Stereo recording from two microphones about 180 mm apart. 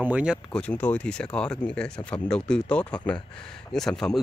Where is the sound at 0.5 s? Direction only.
5° left (ahead or behind).